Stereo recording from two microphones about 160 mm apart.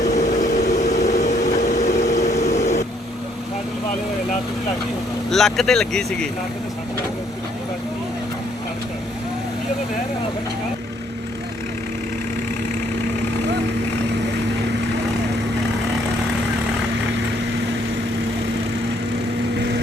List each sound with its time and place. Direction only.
0.1 s vehicle: 45° left (ahead or behind)
2.4 s a sound: 45° left (ahead or behind)
5.3 s speech: centre (ahead or behind)